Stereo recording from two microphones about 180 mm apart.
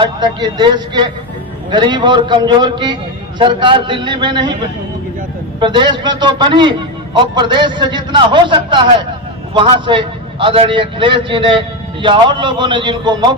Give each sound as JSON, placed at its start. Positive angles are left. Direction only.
{"t": 0.0, "sound": "a man's voice", "side_deg": -25}
{"t": 5.5, "sound": "a man's voice", "side_deg": -25}